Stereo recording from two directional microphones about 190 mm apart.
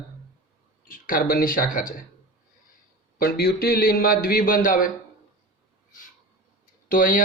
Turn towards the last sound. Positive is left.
turn(degrees=45)  # may be behind; listen again after turning